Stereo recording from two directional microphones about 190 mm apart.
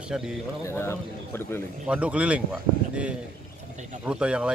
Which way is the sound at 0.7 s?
15° left (ahead or behind).